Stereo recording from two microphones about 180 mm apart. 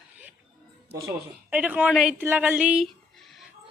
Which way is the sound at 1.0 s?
10° right (ahead or behind).